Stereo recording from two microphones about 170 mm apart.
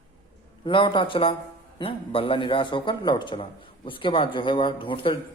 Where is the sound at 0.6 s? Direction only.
25° left (ahead or behind).